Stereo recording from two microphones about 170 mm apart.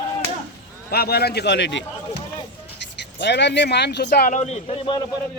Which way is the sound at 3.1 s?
90° left.